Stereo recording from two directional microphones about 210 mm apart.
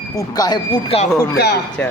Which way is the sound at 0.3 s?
20° left (ahead or behind).